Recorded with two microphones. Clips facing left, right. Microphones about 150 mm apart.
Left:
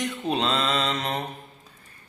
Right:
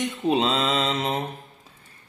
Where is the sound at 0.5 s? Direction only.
20° right (ahead or behind).